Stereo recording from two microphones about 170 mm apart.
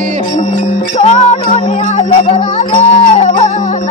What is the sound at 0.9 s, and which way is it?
Music, 40° left (ahead or behind).